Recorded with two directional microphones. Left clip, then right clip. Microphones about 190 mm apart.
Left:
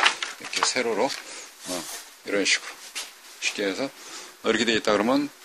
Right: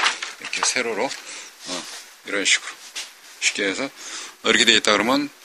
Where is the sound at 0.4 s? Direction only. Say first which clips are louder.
Right 2 dB; 15° left (ahead or behind).